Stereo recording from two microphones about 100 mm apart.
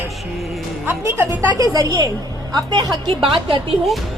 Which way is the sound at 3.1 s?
60° right (ahead or behind).